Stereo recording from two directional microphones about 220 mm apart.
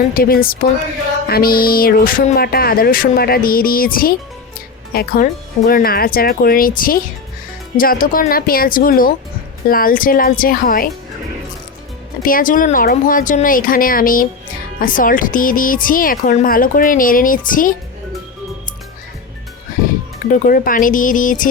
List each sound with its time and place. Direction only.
0.1 s speech: 40° left (ahead or behind)
12.2 s speech: 40° left (ahead or behind)
20.3 s speech: 40° left (ahead or behind)